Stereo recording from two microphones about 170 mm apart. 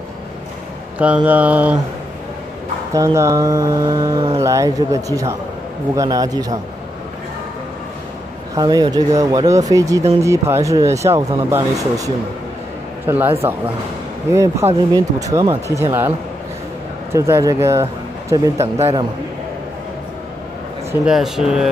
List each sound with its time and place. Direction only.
0.9 s mantra: 10° right (ahead or behind)
2.9 s speech: 15° right (ahead or behind)
8.5 s speech: 25° right (ahead or behind)
13.0 s mantra: 10° right (ahead or behind)
15.0 s speech: 20° right (ahead or behind)
17.1 s mantra: 15° right (ahead or behind)
18.3 s speech: 20° right (ahead or behind)
20.9 s speech: 5° right (ahead or behind)